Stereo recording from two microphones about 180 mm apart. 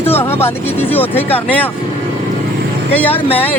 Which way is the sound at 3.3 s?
10° left (ahead or behind).